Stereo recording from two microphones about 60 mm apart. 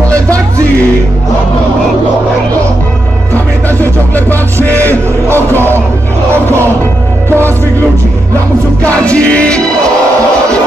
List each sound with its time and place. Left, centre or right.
4.1 s music: left
5.3 s music: right
7.2 s music: right
9.0 s music: left